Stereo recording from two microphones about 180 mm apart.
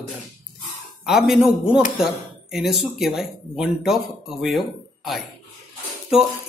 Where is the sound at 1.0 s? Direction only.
Centre (ahead or behind).